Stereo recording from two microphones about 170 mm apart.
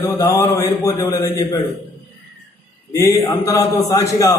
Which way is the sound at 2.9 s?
20° left (ahead or behind).